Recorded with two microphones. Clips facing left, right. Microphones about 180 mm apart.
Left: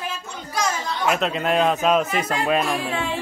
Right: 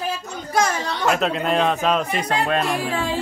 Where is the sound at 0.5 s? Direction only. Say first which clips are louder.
Right 4 dB; 60° right (ahead or behind).